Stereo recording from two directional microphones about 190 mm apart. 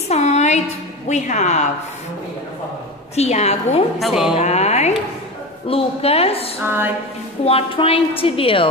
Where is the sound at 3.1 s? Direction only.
35° left (ahead or behind).